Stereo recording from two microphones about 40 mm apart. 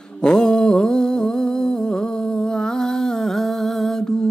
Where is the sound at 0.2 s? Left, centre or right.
Centre.